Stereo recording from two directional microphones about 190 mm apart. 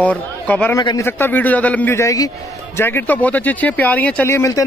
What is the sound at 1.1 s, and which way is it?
A man's voice, 10° left (ahead or behind).